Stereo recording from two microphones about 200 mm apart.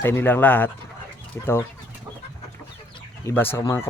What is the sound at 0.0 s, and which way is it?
Speech, 10° left (ahead or behind).